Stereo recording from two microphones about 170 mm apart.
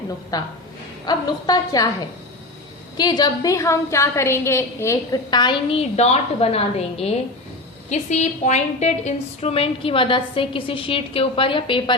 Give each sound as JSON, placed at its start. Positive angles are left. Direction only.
{"t": 0.3, "sound": "a woman's voice", "side_deg": 20}
{"t": 3.0, "sound": "a woman's voice", "side_deg": 25}
{"t": 6.0, "sound": "a woman's voice", "side_deg": 40}